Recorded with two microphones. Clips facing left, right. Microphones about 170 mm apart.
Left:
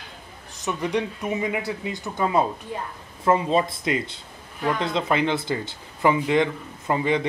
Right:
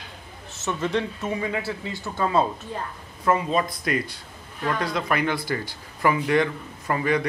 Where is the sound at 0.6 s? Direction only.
15° left (ahead or behind).